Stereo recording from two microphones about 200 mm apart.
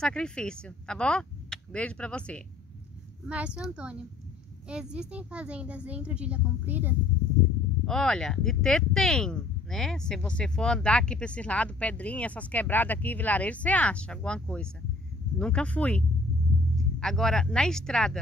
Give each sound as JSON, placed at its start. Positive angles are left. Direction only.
{"t": 0.0, "sound": "speech", "side_deg": 5}
{"t": 3.3, "sound": "speech", "side_deg": -5}
{"t": 7.8, "sound": "speech", "side_deg": 5}